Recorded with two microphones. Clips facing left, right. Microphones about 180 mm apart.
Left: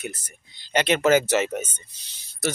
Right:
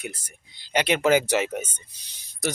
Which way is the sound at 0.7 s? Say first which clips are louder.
Left 1 dB; 10° right (ahead or behind).